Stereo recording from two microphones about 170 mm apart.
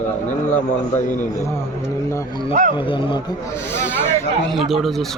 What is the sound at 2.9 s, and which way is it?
Speech, 30° left (ahead or behind).